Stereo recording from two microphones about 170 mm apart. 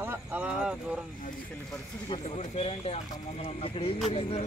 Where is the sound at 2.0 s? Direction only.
35° left (ahead or behind).